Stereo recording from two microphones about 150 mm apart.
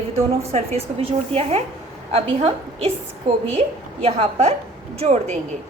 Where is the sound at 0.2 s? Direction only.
45° right (ahead or behind).